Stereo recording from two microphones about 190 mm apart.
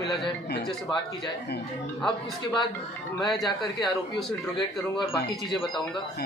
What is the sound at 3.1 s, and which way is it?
Speech, centre (ahead or behind).